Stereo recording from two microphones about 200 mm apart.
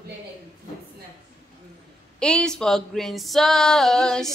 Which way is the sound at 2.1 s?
5° left (ahead or behind).